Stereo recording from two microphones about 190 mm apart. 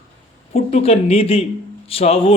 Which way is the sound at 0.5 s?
30° left (ahead or behind).